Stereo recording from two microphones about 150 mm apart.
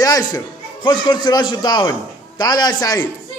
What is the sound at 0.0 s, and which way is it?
A man's voice, 25° left (ahead or behind).